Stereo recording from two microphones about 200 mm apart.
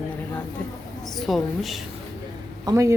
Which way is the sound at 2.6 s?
15° right (ahead or behind).